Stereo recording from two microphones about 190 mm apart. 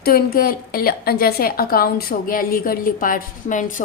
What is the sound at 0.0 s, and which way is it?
Speech, 55° left (ahead or behind).